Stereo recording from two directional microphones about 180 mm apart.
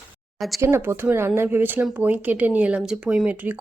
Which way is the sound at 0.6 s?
15° right (ahead or behind).